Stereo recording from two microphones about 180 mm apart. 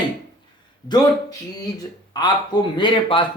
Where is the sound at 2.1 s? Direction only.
25° left (ahead or behind).